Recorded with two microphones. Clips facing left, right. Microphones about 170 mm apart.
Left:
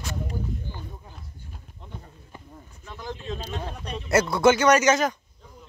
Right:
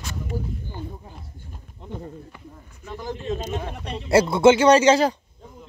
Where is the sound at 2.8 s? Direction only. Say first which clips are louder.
Right 5 dB; 10° right (ahead or behind); by 5.1 s 30° right (ahead or behind).